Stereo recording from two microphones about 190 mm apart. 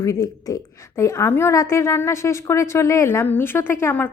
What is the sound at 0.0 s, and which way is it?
Speech, 20° left (ahead or behind).